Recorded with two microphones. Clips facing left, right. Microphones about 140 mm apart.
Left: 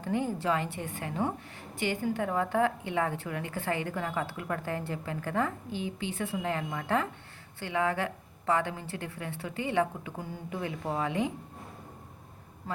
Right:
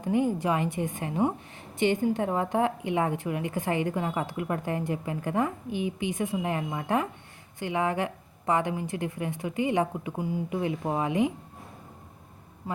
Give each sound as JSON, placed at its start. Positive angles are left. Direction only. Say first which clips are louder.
{"t": 0.0, "sound": "a woman's voice", "louder": "right 5 dB", "side_deg": -15}
{"t": 12.7, "sound": "a man's voice", "louder": "right 2 dB", "side_deg": -10}